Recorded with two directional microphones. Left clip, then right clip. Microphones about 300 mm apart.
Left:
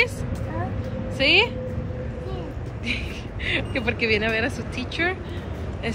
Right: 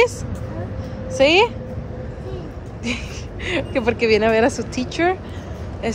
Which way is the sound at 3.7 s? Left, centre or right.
Centre.